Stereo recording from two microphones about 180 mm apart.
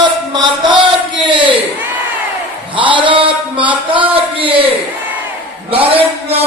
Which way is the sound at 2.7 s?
25° right (ahead or behind).